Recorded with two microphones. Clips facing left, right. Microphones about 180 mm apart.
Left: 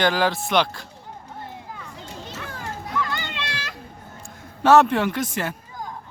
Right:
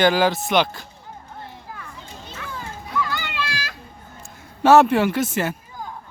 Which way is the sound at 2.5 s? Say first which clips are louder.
Right 3 dB; 70° left (ahead or behind).